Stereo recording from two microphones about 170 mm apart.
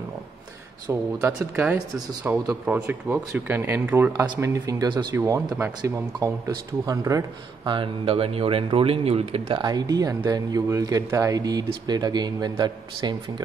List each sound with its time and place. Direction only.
1.2 s speech: 10° right (ahead or behind)